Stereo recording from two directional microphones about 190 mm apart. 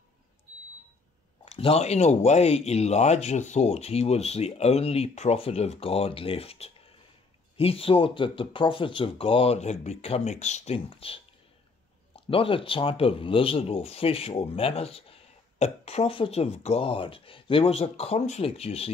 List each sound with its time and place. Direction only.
1.4 s speech: 30° left (ahead or behind)
12.3 s speech: 30° left (ahead or behind)